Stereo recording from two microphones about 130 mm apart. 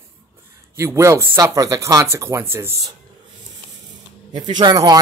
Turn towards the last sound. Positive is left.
turn(degrees=-30)  # may be behind; listen again after turning